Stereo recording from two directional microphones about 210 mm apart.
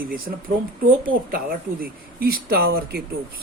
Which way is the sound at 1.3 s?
45° right (ahead or behind).